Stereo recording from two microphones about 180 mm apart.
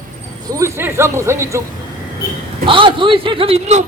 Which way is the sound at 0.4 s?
15° right (ahead or behind).